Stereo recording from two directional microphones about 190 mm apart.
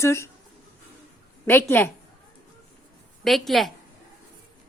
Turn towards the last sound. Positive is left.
turn(degrees=0)  # may be behind; listen again after turning